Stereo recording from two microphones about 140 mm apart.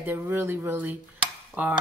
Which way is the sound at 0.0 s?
15° right (ahead or behind).